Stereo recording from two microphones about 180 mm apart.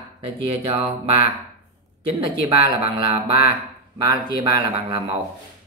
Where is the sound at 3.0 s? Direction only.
25° right (ahead or behind).